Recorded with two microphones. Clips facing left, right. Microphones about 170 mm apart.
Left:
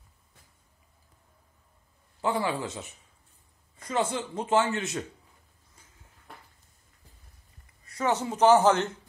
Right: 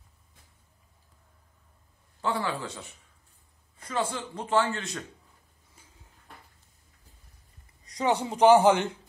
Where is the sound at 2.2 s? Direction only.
15° left (ahead or behind).